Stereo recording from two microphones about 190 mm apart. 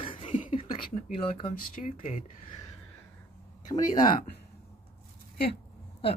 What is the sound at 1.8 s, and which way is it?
Speech, 40° left (ahead or behind).